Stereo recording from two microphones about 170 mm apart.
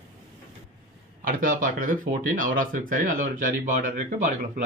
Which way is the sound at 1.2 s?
50° right (ahead or behind).